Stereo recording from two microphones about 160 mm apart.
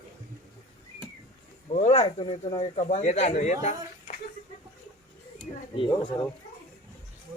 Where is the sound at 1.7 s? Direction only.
45° left (ahead or behind).